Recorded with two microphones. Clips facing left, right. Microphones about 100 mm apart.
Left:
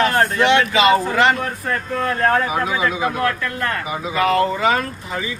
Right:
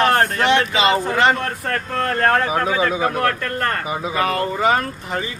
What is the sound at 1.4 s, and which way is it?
Speech, 60° right (ahead or behind).